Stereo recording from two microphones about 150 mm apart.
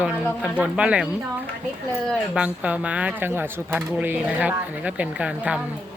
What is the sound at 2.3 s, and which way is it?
Speech, 10° right (ahead or behind).